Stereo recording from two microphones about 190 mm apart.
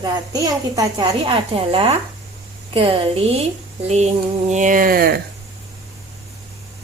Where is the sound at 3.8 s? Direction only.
35° right (ahead or behind); by 5.2 s 50° right (ahead or behind).